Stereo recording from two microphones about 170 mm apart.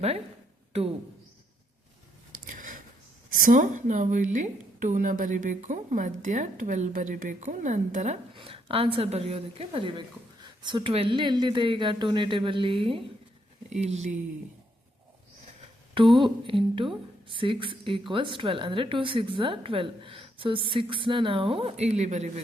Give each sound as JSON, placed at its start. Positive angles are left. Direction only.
{"t": 2.5, "sound": "a sound", "side_deg": -50}
{"t": 3.3, "sound": "a woman's voice", "side_deg": -50}
{"t": 8.4, "sound": "a woman's voice", "side_deg": -30}
{"t": 13.7, "sound": "a woman's voice", "side_deg": -40}
{"t": 16.1, "sound": "a woman's voice", "side_deg": -30}